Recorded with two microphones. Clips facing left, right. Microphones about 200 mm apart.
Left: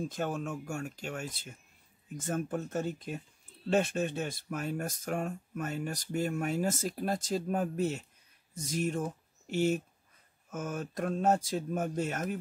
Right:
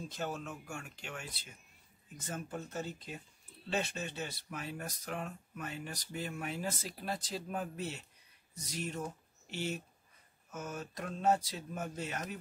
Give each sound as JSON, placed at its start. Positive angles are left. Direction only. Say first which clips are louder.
{"t": 0.0, "sound": "speech", "louder": "left 6 dB", "side_deg": 50}